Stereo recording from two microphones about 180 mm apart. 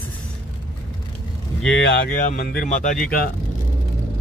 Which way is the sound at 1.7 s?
65° left (ahead or behind).